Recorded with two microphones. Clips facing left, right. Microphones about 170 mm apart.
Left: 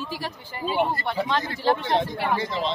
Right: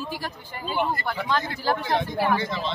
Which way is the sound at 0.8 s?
30° left (ahead or behind).